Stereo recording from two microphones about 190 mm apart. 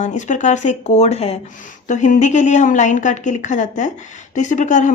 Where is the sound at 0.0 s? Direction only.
40° left (ahead or behind).